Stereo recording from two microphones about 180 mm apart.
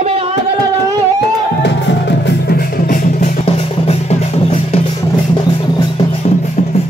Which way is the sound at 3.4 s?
35° left (ahead or behind).